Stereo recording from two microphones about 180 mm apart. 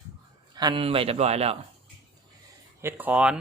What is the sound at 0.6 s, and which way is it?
A man's voice, 25° right (ahead or behind).